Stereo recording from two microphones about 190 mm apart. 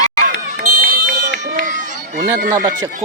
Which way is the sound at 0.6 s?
45° right (ahead or behind).